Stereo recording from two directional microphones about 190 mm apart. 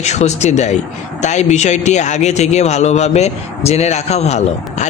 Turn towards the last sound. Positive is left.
turn(degrees=35)  # may be behind; listen again after turning